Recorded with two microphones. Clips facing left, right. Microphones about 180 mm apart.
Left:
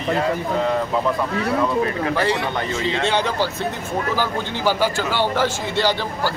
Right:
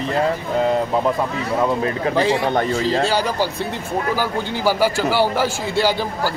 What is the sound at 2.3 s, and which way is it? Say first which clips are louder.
Speech: right 5 dB; 50° right (ahead or behind).